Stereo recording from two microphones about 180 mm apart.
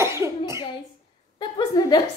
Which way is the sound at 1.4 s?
25° left (ahead or behind).